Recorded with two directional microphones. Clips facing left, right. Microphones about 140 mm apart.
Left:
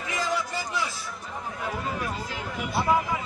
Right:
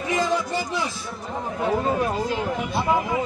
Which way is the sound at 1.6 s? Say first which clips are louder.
Right 10 dB; 30° right (ahead or behind).